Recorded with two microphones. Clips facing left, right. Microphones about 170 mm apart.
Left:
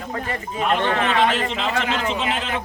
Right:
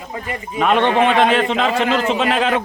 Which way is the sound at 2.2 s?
80° right.